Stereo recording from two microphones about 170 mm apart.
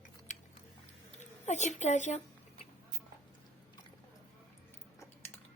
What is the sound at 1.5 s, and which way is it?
Speech, 45° left (ahead or behind).